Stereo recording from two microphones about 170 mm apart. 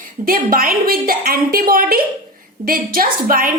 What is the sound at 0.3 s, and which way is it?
A woman's voice, 55° right (ahead or behind).